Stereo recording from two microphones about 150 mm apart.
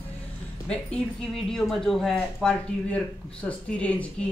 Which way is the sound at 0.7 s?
5° left (ahead or behind).